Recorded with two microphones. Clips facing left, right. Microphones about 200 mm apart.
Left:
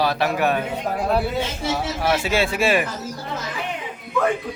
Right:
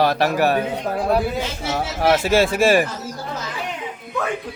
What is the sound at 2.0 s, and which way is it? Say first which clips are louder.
Speech: right 6 dB; 45° right (ahead or behind).